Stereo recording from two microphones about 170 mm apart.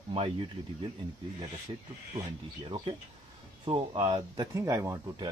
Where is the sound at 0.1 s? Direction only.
30° right (ahead or behind).